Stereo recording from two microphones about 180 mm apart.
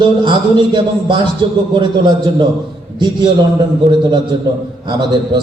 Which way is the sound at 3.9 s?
25° right (ahead or behind).